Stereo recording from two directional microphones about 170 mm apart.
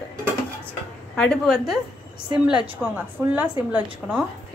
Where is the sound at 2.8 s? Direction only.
5° right (ahead or behind).